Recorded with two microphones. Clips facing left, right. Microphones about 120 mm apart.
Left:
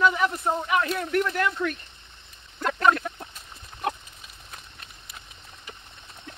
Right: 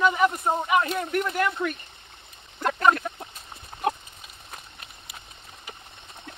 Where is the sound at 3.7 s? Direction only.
45° right (ahead or behind).